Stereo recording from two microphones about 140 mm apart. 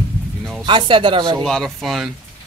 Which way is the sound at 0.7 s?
35° right (ahead or behind).